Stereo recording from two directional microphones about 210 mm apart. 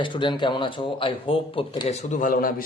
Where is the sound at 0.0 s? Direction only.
25° left (ahead or behind).